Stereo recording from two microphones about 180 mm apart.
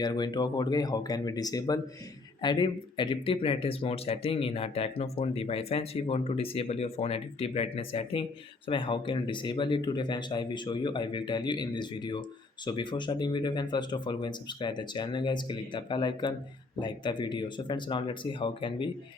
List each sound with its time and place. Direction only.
0.0 s speech: 25° left (ahead or behind)